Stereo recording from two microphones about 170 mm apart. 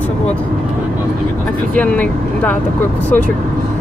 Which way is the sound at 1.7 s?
10° left (ahead or behind).